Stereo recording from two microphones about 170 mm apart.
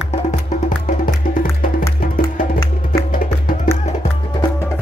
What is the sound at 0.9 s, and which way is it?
Music, 55° left (ahead or behind).